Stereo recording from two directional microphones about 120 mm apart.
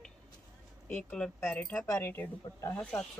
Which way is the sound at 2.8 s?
10° left (ahead or behind).